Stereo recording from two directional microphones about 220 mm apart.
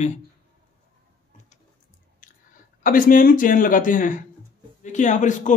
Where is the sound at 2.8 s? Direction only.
40° left (ahead or behind).